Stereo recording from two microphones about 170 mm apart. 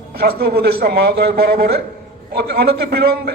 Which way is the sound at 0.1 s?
65° right (ahead or behind).